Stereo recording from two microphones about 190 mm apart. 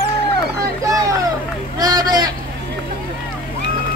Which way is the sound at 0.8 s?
15° right (ahead or behind).